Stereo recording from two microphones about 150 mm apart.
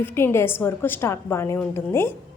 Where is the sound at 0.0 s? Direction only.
15° left (ahead or behind).